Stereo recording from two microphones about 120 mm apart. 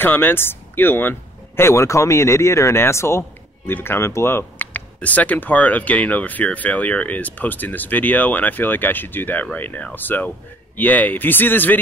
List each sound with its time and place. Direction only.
0.0 s a man's voice: 15° left (ahead or behind)